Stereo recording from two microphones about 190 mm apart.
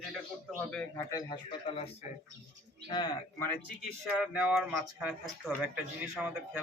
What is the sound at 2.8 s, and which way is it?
Speech, 25° left (ahead or behind).